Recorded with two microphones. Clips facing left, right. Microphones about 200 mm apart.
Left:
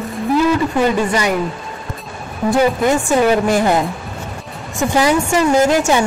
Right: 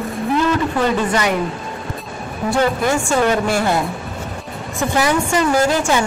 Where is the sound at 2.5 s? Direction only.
20° left (ahead or behind).